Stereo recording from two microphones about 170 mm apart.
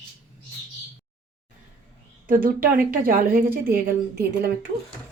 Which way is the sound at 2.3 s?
55° right (ahead or behind).